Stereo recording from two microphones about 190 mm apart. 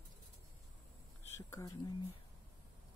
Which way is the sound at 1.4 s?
15° left (ahead or behind).